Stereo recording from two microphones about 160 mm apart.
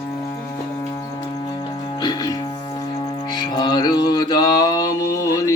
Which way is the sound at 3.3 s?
25° left (ahead or behind).